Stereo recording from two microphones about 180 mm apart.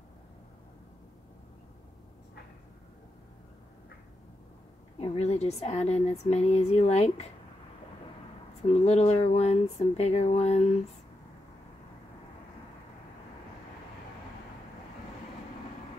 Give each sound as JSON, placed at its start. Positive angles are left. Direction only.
{"t": 5.0, "sound": "a woman's voice", "side_deg": 35}
{"t": 8.6, "sound": "a woman's voice", "side_deg": 35}